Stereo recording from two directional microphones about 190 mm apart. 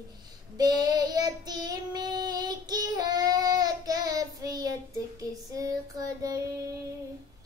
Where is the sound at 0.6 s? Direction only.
20° right (ahead or behind).